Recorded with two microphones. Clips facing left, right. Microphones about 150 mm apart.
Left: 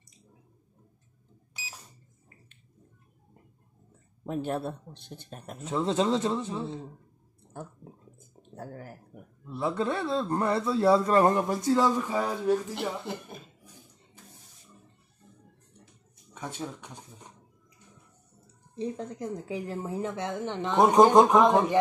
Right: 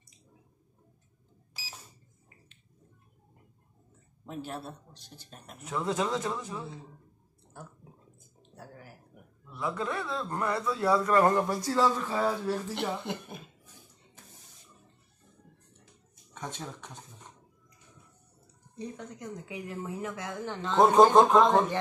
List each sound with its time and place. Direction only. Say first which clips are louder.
4.3 s speech: left 8 dB; 55° left (ahead or behind)
5.6 s speech: left 4 dB; 25° left (ahead or behind)
7.5 s speech: left 6 dB; 50° left (ahead or behind)
9.5 s speech: left 4 dB; 30° left (ahead or behind); by 12.5 s 15° left (ahead or behind)
12.7 s speech: even; centre (ahead or behind)
16.3 s speech: left 3 dB; 10° left (ahead or behind)
18.8 s speech: left 7 dB; 30° left (ahead or behind); by 21.7 s 15° left (ahead or behind)